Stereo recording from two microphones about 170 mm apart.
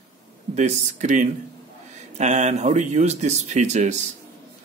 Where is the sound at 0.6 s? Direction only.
45° right (ahead or behind).